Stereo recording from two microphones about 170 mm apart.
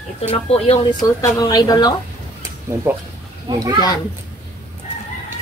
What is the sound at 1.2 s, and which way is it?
Speech, 20° left (ahead or behind).